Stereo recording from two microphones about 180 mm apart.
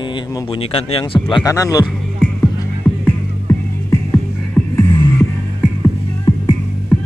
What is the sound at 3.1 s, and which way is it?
Music, 10° left (ahead or behind).